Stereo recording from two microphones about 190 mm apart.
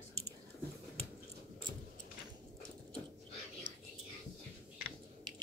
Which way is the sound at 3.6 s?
45° right (ahead or behind).